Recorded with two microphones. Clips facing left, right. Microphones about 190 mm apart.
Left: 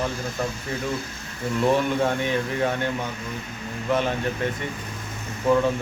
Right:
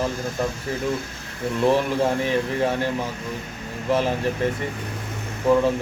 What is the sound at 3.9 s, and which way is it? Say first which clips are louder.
Speech: right 2 dB; 5° right (ahead or behind).